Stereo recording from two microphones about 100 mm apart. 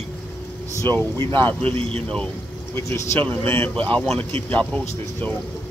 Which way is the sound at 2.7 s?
25° left (ahead or behind).